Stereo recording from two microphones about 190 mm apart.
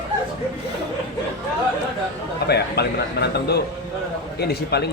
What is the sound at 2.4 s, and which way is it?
Speech, 60° left (ahead or behind).